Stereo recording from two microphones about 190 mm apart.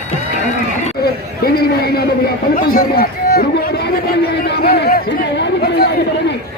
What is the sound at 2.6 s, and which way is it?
Chatter, 50° left (ahead or behind).